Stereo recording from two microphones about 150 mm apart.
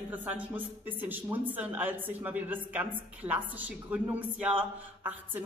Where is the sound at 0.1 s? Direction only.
10° right (ahead or behind).